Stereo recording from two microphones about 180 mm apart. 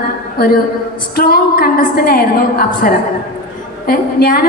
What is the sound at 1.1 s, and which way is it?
A woman's voice, 55° left (ahead or behind).